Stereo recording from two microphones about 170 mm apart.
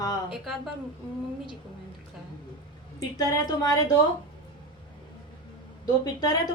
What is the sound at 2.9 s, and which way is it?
Speech, 25° left (ahead or behind).